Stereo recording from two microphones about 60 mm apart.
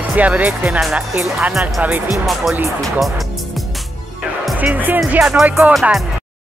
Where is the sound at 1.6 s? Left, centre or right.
Right.